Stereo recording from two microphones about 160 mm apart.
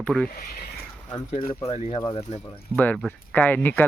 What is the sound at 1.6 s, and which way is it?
Speech, 40° left (ahead or behind).